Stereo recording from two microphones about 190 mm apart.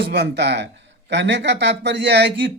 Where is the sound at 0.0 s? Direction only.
65° right (ahead or behind).